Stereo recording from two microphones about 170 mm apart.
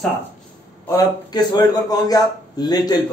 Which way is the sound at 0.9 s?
25° left (ahead or behind).